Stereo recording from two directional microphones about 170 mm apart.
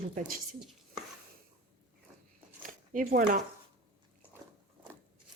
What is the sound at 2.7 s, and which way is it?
Speech, 55° right (ahead or behind).